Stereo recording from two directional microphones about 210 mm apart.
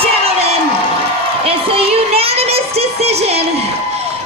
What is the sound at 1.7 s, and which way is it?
Child singing, 30° right (ahead or behind).